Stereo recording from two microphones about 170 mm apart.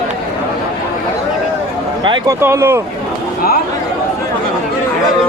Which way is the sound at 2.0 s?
30° right (ahead or behind).